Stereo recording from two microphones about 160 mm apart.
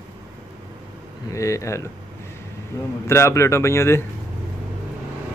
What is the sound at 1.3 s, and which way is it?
Speech, 20° left (ahead or behind).